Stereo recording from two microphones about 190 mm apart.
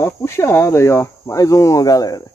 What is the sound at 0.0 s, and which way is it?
Speech, 15° left (ahead or behind).